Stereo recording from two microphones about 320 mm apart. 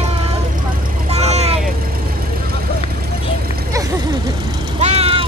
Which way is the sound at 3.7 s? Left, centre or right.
Centre.